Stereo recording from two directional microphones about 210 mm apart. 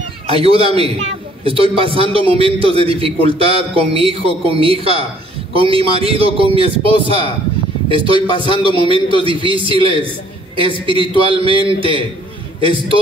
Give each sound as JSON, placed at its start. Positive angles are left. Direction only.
{"t": 0.3, "sound": "a man's voice", "side_deg": -25}
{"t": 7.9, "sound": "a man's voice", "side_deg": -25}